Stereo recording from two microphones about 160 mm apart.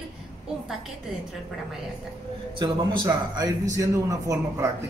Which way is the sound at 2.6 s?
30° right (ahead or behind).